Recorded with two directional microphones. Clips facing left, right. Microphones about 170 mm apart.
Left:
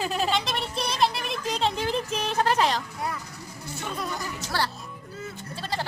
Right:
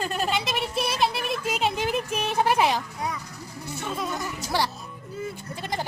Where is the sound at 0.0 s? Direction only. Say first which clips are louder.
Left 1 dB; centre (ahead or behind).